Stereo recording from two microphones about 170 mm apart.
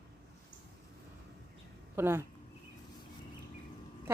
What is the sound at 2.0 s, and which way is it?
Speech, 15° right (ahead or behind).